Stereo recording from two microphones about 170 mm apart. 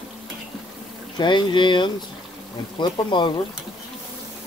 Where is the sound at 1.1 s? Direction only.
25° left (ahead or behind).